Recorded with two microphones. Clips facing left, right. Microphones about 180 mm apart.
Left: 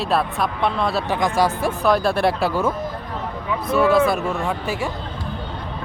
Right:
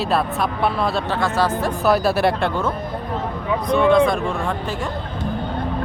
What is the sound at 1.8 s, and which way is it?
Speech, 5° right (ahead or behind).